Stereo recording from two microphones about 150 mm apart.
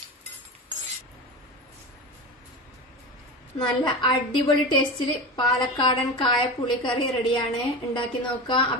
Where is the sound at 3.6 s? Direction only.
30° left (ahead or behind).